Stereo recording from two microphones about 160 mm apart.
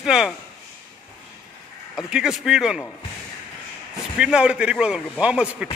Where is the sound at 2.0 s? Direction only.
5° right (ahead or behind).